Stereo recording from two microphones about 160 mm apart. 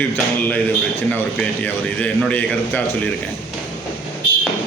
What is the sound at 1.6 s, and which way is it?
A man's voice, 10° left (ahead or behind).